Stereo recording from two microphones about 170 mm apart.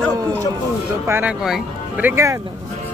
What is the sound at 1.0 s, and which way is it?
Speech, 15° right (ahead or behind).